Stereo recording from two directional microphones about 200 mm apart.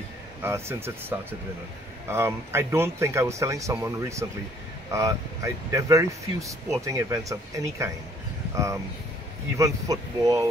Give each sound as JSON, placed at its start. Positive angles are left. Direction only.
{"t": 0.4, "sound": "speech", "side_deg": -10}
{"t": 9.6, "sound": "speech", "side_deg": -15}